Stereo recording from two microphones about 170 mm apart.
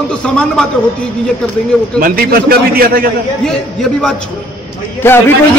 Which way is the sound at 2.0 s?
60° right (ahead or behind).